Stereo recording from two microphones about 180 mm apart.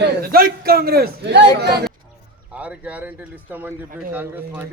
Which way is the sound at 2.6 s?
10° right (ahead or behind).